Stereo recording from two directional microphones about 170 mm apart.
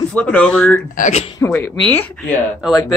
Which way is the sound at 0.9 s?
45° left (ahead or behind).